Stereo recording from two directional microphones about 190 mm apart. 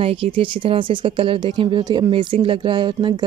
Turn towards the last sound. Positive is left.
turn(degrees=-25)  # may be behind; listen again after turning